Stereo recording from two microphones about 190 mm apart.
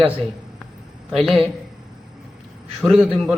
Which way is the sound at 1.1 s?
Centre (ahead or behind).